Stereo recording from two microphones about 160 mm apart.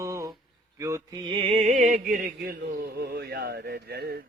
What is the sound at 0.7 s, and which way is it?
Music, 20° right (ahead or behind).